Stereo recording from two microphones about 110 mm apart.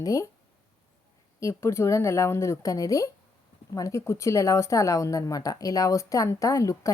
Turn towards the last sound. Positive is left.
turn(degrees=30)  # may be behind; listen again after turning